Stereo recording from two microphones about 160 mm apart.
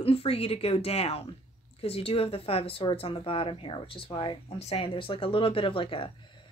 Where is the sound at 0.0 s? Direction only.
35° left (ahead or behind).